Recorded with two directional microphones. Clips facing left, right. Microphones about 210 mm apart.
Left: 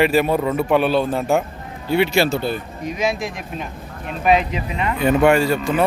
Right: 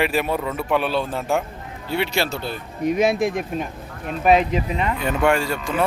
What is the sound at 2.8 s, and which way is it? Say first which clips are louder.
Speech: right 5 dB; 55° right (ahead or behind).